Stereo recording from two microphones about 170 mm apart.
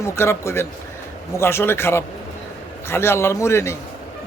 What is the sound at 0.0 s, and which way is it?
A man's voice, 15° left (ahead or behind).